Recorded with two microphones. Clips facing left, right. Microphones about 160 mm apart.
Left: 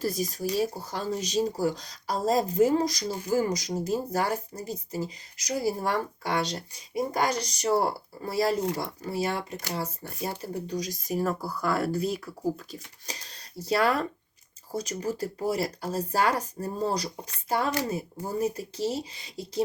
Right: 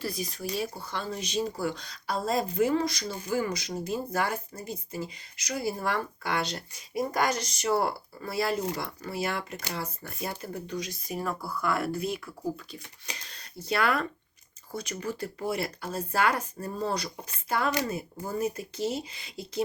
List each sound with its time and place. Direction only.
0.0 s speech: 45° left (ahead or behind)